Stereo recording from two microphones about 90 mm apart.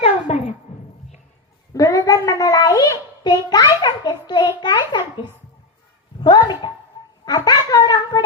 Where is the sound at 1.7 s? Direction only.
40° left (ahead or behind); by 5.3 s 55° left (ahead or behind).